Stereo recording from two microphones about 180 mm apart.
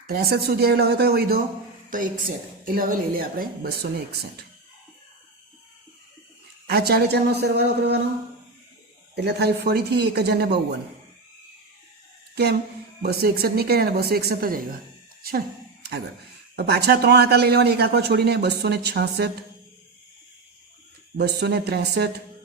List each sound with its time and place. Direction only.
0.1 s speech: 60° right (ahead or behind)
1.9 s a woman's voice: 50° right (ahead or behind)
6.7 s speech: 60° right (ahead or behind)
9.1 s speech: 65° right (ahead or behind)
12.3 s speech: 65° right (ahead or behind)
16.6 s speech: 65° right (ahead or behind)
21.2 s speech: 65° right (ahead or behind)